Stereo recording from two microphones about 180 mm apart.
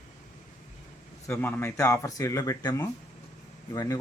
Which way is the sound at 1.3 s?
10° left (ahead or behind).